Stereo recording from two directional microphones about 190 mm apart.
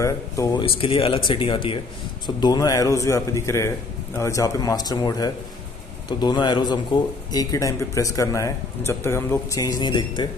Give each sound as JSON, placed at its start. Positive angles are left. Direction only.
{"t": 0.0, "sound": "speech", "side_deg": 15}
{"t": 0.7, "sound": "speech", "side_deg": 30}